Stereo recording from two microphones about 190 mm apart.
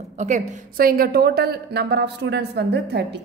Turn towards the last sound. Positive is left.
turn(degrees=-60)  # may be behind; listen again after turning